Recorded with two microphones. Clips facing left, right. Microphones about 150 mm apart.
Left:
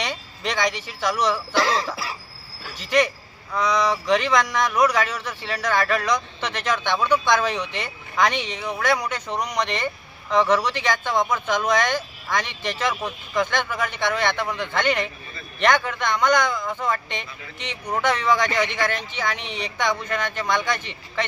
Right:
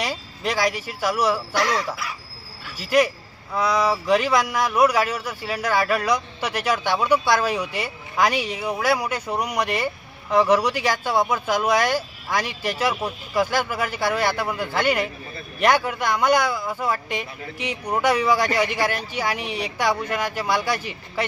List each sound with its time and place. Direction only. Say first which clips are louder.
0.0 s speech: right 2 dB; 5° right (ahead or behind)
1.5 s speech: left 1 dB; 30° left (ahead or behind)
2.8 s a man's voice: right 2 dB; 5° right (ahead or behind)